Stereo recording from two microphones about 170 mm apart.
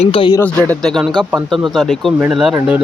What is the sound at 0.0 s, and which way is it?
Speech, 30° left (ahead or behind).